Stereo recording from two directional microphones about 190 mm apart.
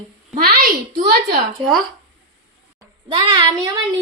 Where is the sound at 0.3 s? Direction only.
45° right (ahead or behind).